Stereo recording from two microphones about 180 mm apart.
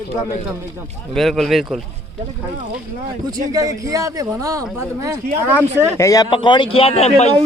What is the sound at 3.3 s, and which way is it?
Speech, 20° right (ahead or behind).